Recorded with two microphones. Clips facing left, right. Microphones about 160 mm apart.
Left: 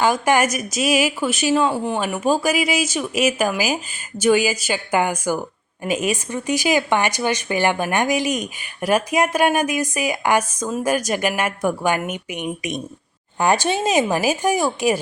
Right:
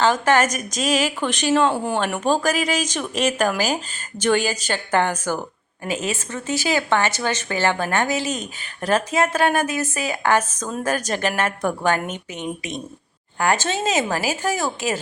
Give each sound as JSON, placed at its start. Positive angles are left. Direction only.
{"t": 0.0, "sound": "speech", "side_deg": 10}